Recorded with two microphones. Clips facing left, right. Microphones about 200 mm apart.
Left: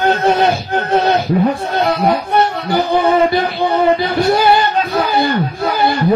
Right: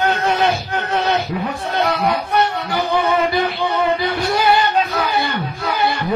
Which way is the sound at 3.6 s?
35° left (ahead or behind).